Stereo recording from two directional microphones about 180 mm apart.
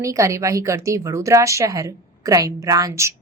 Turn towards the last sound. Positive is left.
turn(degrees=-15)  # may be behind; listen again after turning